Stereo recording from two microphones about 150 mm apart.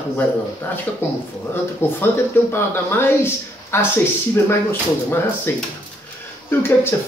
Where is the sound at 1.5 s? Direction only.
15° left (ahead or behind).